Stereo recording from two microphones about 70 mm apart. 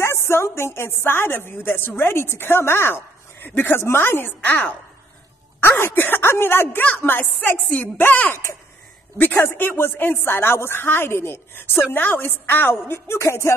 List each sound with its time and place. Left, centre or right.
0.0 s a woman's voice: left